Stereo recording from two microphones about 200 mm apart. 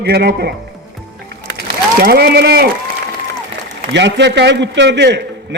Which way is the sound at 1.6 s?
50° right (ahead or behind).